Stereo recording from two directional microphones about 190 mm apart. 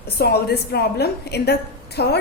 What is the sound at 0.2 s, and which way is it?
A woman's voice, 55° left (ahead or behind).